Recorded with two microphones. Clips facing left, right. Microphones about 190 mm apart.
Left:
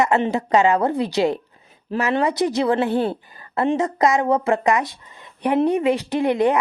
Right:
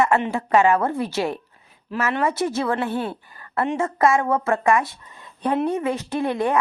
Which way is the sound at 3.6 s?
20° left (ahead or behind).